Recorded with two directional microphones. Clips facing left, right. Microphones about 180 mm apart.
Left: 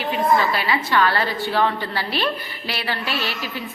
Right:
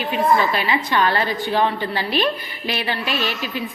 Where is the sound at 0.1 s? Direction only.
20° right (ahead or behind).